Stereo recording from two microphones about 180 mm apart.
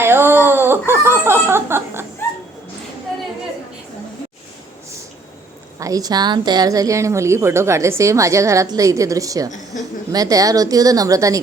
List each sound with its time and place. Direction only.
0.0 s speech: 10° right (ahead or behind)
5.8 s a woman's voice: 20° right (ahead or behind)